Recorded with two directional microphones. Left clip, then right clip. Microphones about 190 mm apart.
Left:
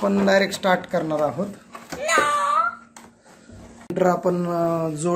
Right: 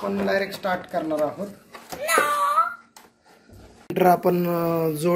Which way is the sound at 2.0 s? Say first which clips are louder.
Left 1 dB; 30° right (ahead or behind).